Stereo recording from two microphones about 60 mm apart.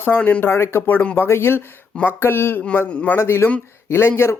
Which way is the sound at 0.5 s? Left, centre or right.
Left.